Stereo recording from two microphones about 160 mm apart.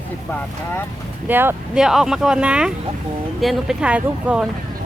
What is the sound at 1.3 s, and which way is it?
Speech, 15° right (ahead or behind).